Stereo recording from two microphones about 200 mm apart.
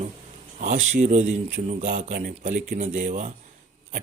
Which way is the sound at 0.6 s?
40° right (ahead or behind).